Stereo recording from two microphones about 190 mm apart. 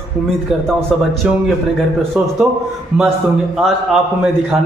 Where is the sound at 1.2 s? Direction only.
5° right (ahead or behind).